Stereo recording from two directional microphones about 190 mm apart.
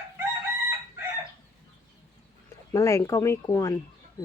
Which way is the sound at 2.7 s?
15° left (ahead or behind).